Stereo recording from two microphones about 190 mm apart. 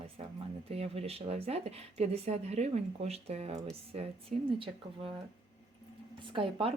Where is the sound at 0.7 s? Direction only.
35° right (ahead or behind).